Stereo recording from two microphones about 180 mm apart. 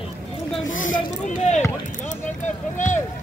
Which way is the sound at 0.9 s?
35° left (ahead or behind).